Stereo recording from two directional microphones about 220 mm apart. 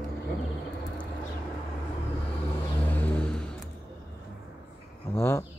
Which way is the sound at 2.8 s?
5° left (ahead or behind).